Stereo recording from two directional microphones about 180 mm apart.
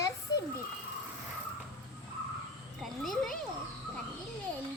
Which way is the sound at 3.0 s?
Centre (ahead or behind).